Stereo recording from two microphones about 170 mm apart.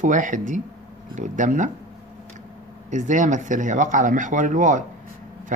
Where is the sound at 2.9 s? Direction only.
45° right (ahead or behind).